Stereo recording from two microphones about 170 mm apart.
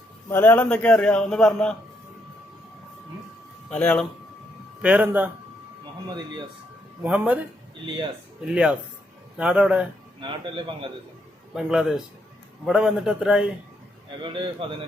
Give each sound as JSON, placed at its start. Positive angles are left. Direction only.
{"t": 0.3, "sound": "a man's voice", "side_deg": 10}
{"t": 3.7, "sound": "a man's voice", "side_deg": 10}
{"t": 4.8, "sound": "a man's voice", "side_deg": -10}
{"t": 5.8, "sound": "speech", "side_deg": -25}
{"t": 7.0, "sound": "a man's voice", "side_deg": -10}
{"t": 8.4, "sound": "a man's voice", "side_deg": -5}
{"t": 10.2, "sound": "speech", "side_deg": -30}
{"t": 11.5, "sound": "a man's voice", "side_deg": -5}
{"t": 14.3, "sound": "speech", "side_deg": -30}